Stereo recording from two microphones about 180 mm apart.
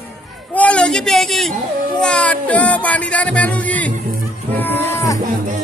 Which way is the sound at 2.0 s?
5° left (ahead or behind).